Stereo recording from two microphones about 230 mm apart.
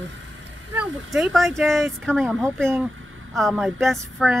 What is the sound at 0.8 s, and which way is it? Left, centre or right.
Speech, centre.